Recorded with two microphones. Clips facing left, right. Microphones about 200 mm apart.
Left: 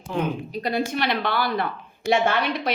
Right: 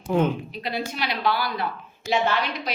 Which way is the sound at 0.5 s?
45° left (ahead or behind).